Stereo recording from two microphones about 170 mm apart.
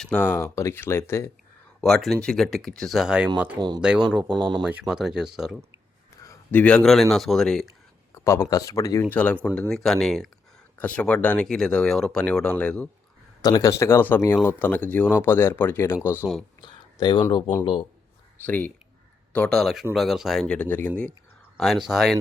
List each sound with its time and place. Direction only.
0.0 s speech: 5° left (ahead or behind)
1.8 s speech: centre (ahead or behind)
4.4 s speech: 25° right (ahead or behind)
4.6 s speech: 5° right (ahead or behind)
6.2 s speech: 10° left (ahead or behind)
8.1 s speech: 15° left (ahead or behind)
13.4 s speech: 20° left (ahead or behind)
16.6 s speech: 25° left (ahead or behind)
18.3 s speech: 10° left (ahead or behind)